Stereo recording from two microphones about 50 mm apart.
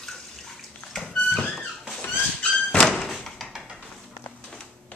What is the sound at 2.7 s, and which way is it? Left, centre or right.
Door, centre.